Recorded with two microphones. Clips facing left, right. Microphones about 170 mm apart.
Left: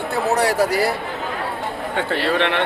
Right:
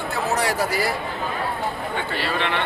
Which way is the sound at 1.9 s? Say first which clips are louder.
Left 10 dB; 70° left (ahead or behind).